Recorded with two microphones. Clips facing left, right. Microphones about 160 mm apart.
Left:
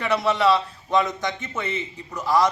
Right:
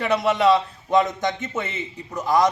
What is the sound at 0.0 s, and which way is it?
A man's voice, 20° right (ahead or behind).